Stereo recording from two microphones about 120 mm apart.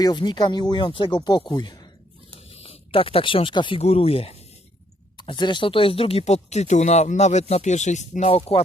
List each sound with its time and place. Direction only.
0.0 s speech: 35° left (ahead or behind)
2.5 s speech: 50° left (ahead or behind)
3.8 s speech: 55° left (ahead or behind)
5.1 s speech: 40° left (ahead or behind); by 8.4 s 80° left
8.4 s speech: 55° left (ahead or behind)